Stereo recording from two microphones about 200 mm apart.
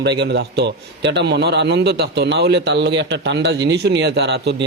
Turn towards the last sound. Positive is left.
turn(degrees=-55)  # may be behind; listen again after turning